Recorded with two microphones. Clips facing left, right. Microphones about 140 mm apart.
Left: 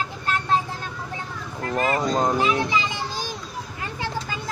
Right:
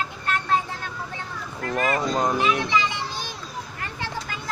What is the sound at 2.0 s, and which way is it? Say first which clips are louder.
Speech: left 1 dB; 30° left (ahead or behind).